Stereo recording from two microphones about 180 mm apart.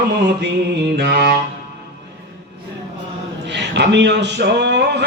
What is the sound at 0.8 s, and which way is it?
Mantra, 65° right (ahead or behind).